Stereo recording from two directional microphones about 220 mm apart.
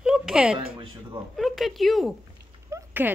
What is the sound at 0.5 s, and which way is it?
Speech, 20° right (ahead or behind).